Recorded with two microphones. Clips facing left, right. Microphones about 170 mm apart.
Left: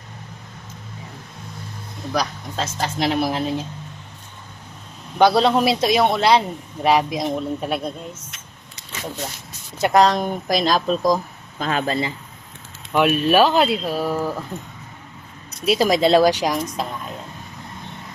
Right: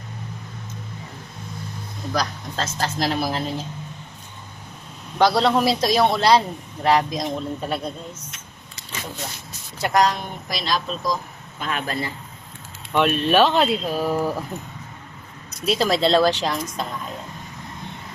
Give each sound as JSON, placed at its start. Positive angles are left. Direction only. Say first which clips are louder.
{"t": 2.1, "sound": "speech", "louder": "left 2 dB", "side_deg": 5}
{"t": 5.1, "sound": "speech", "louder": "left 2 dB", "side_deg": 10}
{"t": 9.7, "sound": "speech", "louder": "left 4 dB", "side_deg": 25}
{"t": 10.5, "sound": "speech", "louder": "left 6 dB", "side_deg": 45}
{"t": 11.6, "sound": "speech", "louder": "left 5 dB", "side_deg": 35}
{"t": 12.9, "sound": "speech", "louder": "left 2 dB", "side_deg": 5}
{"t": 14.2, "sound": "speech", "louder": "right 1 dB", "side_deg": -5}
{"t": 15.6, "sound": "speech", "louder": "left 3 dB", "side_deg": 10}